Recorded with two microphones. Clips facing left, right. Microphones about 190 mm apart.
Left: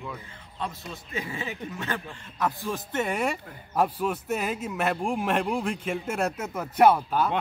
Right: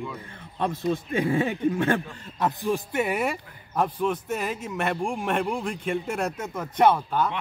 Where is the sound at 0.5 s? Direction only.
55° right (ahead or behind).